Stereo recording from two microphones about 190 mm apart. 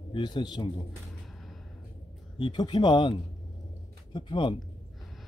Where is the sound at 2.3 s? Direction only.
25° left (ahead or behind).